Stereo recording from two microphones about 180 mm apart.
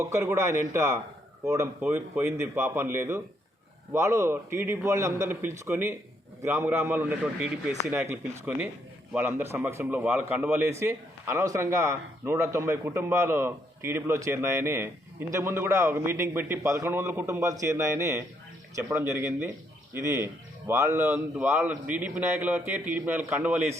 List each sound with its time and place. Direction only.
0.0 s a man's voice: 15° right (ahead or behind)